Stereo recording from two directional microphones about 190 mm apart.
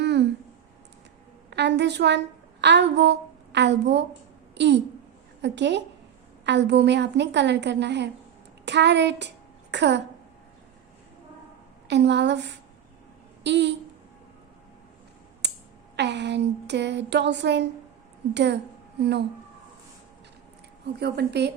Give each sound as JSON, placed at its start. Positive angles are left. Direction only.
{"t": 0.0, "sound": "a sound", "side_deg": -65}
{"t": 1.5, "sound": "a woman's voice", "side_deg": -65}
{"t": 11.9, "sound": "a woman's voice", "side_deg": -65}
{"t": 16.0, "sound": "a woman's voice", "side_deg": -65}
{"t": 20.8, "sound": "a woman's voice", "side_deg": -60}